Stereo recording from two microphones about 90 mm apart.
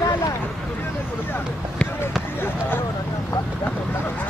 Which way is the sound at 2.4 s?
25° left (ahead or behind).